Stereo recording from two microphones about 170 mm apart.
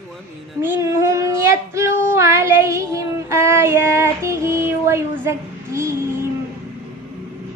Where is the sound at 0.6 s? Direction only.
15° right (ahead or behind).